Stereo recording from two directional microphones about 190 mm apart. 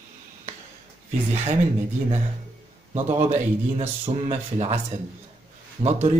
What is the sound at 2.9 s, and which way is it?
A man's voice, 35° right (ahead or behind).